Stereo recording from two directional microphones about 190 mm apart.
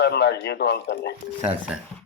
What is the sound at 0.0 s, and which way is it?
Speech, 60° left (ahead or behind).